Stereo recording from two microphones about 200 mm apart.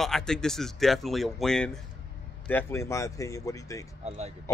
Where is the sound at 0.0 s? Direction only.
Centre (ahead or behind).